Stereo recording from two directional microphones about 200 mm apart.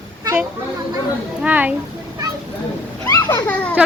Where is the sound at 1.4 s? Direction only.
5° right (ahead or behind).